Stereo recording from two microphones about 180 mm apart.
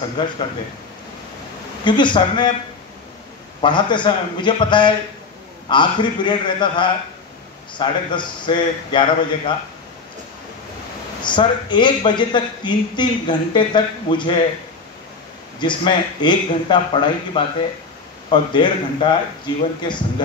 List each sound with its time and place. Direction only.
0.2 s a man's voice: 25° left (ahead or behind)
1.9 s a man's voice: 25° left (ahead or behind)
3.6 s a man's voice: 25° left (ahead or behind)
11.2 s a man's voice: 25° left (ahead or behind)
15.6 s a man's voice: 25° left (ahead or behind)